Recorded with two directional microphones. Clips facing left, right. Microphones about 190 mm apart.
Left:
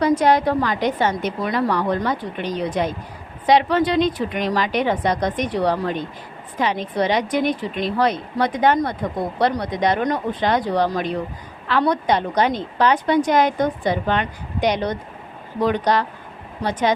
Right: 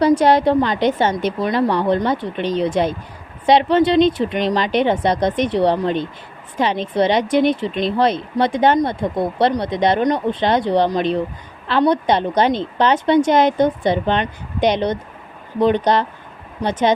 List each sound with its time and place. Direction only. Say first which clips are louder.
0.0 s a woman's voice: right 3 dB; 30° right (ahead or behind)